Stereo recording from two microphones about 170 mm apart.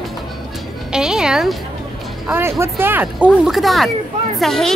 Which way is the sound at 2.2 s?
10° right (ahead or behind).